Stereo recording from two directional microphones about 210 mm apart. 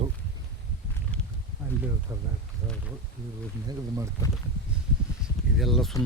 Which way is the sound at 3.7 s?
15° right (ahead or behind).